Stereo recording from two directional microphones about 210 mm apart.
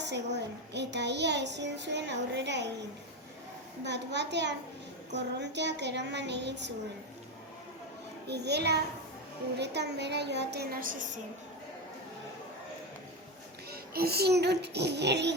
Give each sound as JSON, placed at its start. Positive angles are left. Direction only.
{"t": 0.0, "sound": "a child's voice", "side_deg": -55}
{"t": 3.8, "sound": "a child's voice", "side_deg": -55}
{"t": 8.3, "sound": "a child's voice", "side_deg": -50}
{"t": 13.7, "sound": "a child's voice", "side_deg": -50}